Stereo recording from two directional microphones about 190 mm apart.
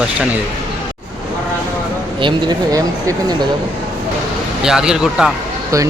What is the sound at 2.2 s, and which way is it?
Speech, 25° right (ahead or behind).